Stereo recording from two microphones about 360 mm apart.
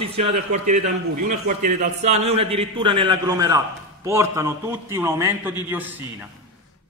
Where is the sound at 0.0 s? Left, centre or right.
Centre.